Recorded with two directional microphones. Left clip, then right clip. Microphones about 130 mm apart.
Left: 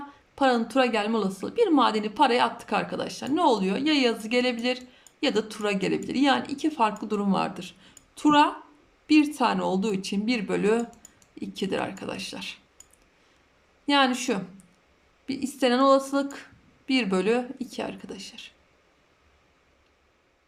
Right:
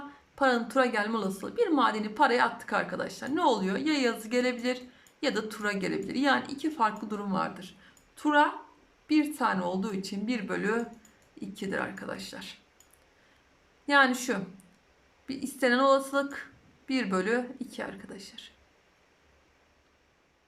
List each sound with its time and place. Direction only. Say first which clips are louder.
0.3 s a woman's voice: left 3 dB; 20° left (ahead or behind)
13.8 s a woman's voice: left 1 dB; 20° left (ahead or behind)